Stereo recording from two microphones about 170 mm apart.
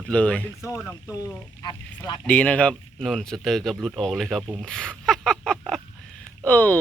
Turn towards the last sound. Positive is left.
turn(degrees=10)  # may be behind; listen again after turning